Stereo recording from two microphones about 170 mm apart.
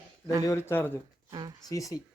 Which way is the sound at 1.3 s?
25° right (ahead or behind).